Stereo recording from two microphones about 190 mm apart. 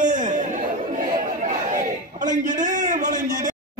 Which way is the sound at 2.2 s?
40° right (ahead or behind).